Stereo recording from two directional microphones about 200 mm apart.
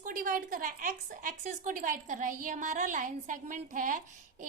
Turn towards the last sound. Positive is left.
turn(degrees=-40)  # may be behind; listen again after turning